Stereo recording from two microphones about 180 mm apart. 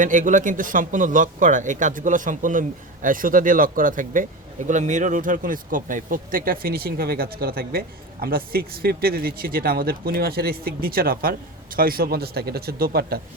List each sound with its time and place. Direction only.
0.0 s a man's voice: 45° right (ahead or behind)